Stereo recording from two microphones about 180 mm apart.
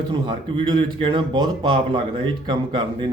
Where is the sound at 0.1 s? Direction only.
25° right (ahead or behind).